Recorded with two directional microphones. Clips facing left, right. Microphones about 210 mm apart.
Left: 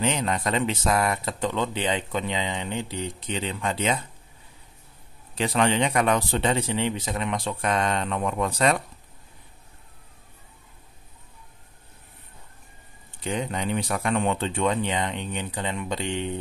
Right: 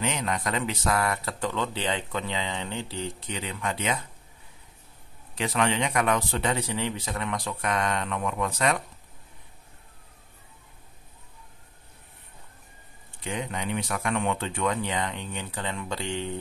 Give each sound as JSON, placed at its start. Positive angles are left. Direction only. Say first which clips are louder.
{"t": 0.0, "sound": "speech", "louder": "left 4 dB", "side_deg": 30}
{"t": 5.4, "sound": "speech", "louder": "left 3 dB", "side_deg": 30}
{"t": 13.2, "sound": "speech", "louder": "left 4 dB", "side_deg": 35}